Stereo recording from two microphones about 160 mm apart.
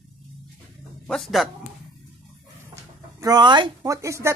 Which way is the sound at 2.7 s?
20° right (ahead or behind).